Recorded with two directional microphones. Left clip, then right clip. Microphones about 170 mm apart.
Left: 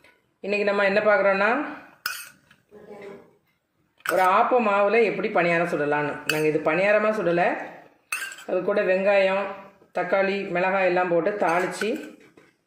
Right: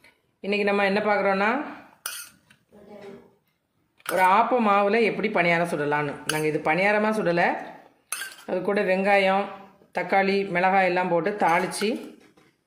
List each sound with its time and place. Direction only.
0.4 s speech: 25° right (ahead or behind)
4.1 s speech: 35° right (ahead or behind)
8.4 s speech: 40° right (ahead or behind)